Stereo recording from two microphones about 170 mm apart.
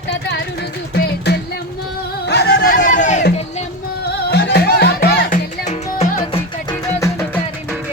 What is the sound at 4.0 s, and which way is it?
Music, 70° left (ahead or behind).